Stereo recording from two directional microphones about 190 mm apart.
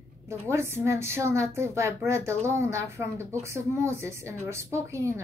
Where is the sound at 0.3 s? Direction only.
15° right (ahead or behind).